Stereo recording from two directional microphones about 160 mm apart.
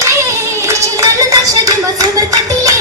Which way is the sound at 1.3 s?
20° right (ahead or behind).